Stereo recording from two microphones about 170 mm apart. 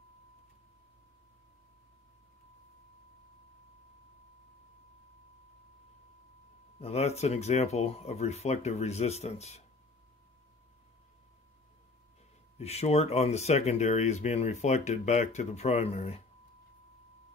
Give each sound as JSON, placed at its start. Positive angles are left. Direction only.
{"t": 6.8, "sound": "speech", "side_deg": 40}
{"t": 12.5, "sound": "speech", "side_deg": 40}